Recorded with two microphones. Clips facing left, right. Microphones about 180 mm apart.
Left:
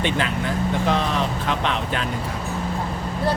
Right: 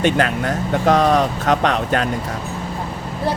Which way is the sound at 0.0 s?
45° right (ahead or behind).